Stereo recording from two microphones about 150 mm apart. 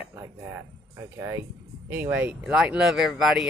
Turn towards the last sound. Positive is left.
turn(degrees=0)  # may be behind; listen again after turning